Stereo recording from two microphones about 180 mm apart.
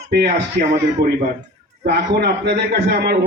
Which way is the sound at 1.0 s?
60° right (ahead or behind).